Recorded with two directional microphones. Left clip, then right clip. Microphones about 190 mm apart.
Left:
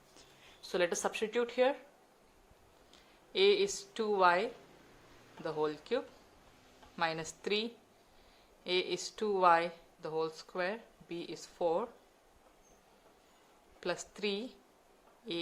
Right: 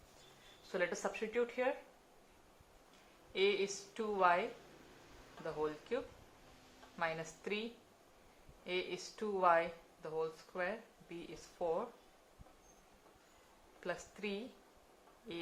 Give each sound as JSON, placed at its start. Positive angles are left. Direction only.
{"t": 0.7, "sound": "speech", "side_deg": 45}
{"t": 3.3, "sound": "speech", "side_deg": 45}
{"t": 5.5, "sound": "speech", "side_deg": 45}
{"t": 8.6, "sound": "speech", "side_deg": 45}
{"t": 13.8, "sound": "speech", "side_deg": 45}